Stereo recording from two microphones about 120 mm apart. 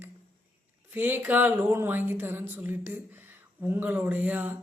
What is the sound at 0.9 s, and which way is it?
A woman's voice, 20° right (ahead or behind).